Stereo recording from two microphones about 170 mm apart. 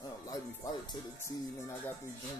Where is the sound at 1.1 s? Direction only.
15° left (ahead or behind).